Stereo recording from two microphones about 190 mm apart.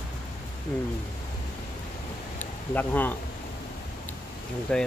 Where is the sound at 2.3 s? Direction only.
10° left (ahead or behind).